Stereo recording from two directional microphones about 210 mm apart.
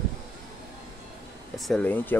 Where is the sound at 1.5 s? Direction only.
Centre (ahead or behind).